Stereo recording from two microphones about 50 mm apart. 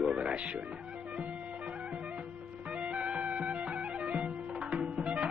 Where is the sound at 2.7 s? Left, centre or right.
Right.